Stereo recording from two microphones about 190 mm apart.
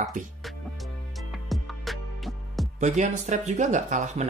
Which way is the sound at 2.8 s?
40° right (ahead or behind).